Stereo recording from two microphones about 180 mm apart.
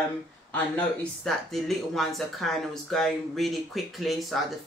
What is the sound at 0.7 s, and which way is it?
Speech, centre (ahead or behind).